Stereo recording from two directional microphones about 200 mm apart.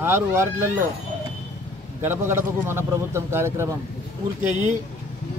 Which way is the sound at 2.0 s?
10° right (ahead or behind).